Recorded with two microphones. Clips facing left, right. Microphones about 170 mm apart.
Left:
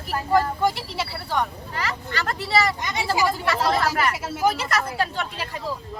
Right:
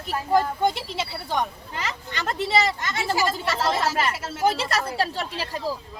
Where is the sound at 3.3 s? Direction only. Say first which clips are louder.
Left 2 dB; 25° right (ahead or behind).